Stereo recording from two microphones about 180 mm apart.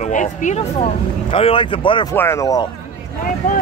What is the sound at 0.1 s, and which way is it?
Speech, 45° left (ahead or behind).